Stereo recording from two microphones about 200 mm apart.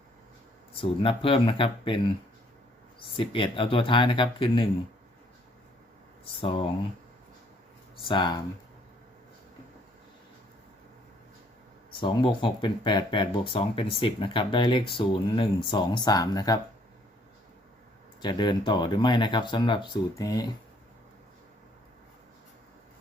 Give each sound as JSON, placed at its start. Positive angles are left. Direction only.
{"t": 0.7, "sound": "speech", "side_deg": 25}
{"t": 3.2, "sound": "speech", "side_deg": 25}
{"t": 6.4, "sound": "speech", "side_deg": 25}
{"t": 8.0, "sound": "speech", "side_deg": 25}
{"t": 11.9, "sound": "speech", "side_deg": 25}
{"t": 18.2, "sound": "speech", "side_deg": 20}